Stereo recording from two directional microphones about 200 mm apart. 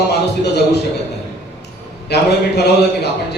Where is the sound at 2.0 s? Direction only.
55° left (ahead or behind).